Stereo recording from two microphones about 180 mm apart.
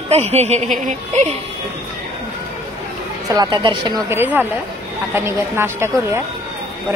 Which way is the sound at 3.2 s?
25° right (ahead or behind).